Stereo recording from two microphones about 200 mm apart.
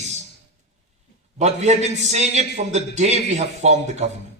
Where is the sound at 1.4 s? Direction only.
35° right (ahead or behind).